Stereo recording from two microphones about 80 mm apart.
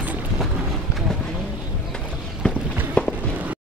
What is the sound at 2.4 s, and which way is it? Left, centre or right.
Walk, centre.